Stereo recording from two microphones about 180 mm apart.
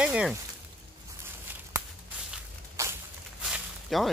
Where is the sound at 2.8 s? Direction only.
15° right (ahead or behind).